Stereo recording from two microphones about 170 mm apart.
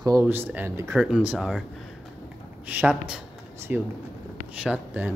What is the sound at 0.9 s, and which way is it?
Speech, 5° right (ahead or behind).